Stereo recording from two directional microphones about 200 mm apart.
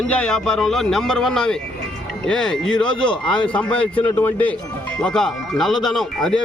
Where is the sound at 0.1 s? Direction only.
5° left (ahead or behind).